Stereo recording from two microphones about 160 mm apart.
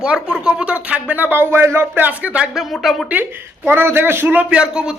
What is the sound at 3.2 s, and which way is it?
A man's voice, 15° right (ahead or behind).